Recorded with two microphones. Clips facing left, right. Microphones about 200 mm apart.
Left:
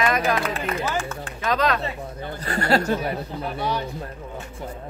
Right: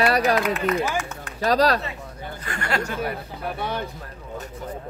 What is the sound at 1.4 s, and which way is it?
Speech, 35° right (ahead or behind).